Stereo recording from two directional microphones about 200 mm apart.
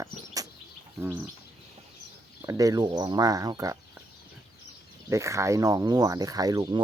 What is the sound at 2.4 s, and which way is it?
Speech, 15° right (ahead or behind).